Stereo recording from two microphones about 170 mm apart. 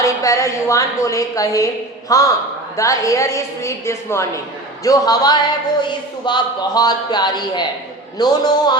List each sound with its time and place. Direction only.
0.0 s a woman's voice: 20° left (ahead or behind)